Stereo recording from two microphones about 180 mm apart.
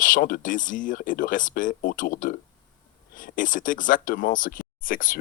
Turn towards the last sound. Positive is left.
turn(degrees=50)  # may be behind; listen again after turning